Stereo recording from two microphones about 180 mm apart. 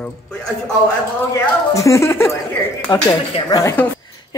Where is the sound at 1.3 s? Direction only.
15° left (ahead or behind).